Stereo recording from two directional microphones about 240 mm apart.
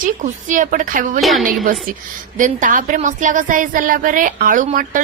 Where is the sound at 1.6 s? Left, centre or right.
Right.